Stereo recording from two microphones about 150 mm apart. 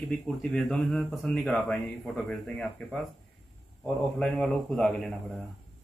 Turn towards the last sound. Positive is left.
turn(degrees=5)  # may be behind; listen again after turning